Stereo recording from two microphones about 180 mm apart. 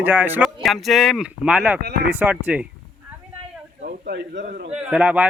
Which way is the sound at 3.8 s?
55° right (ahead or behind).